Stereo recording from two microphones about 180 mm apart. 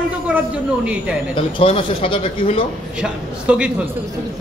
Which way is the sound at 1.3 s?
30° left (ahead or behind).